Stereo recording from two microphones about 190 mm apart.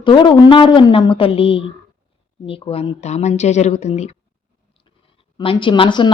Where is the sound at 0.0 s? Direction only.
25° left (ahead or behind).